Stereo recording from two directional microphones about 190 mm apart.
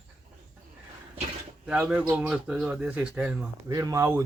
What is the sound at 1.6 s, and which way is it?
Speech, 5° right (ahead or behind).